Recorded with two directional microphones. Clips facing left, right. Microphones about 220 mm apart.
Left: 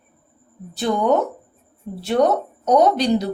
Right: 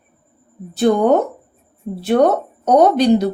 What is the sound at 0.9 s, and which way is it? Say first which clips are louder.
Speech: right 7 dB; 55° right (ahead or behind).